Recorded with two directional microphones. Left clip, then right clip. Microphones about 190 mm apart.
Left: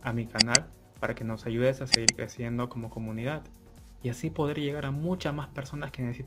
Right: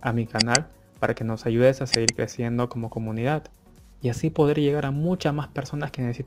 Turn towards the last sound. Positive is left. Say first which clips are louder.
# right 6 dB
turn(degrees=-30)  # may be behind; listen again after turning